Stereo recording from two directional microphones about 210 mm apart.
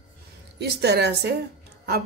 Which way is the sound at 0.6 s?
50° right (ahead or behind).